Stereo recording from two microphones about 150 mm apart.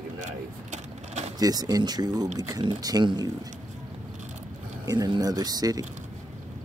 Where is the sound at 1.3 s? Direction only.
25° right (ahead or behind).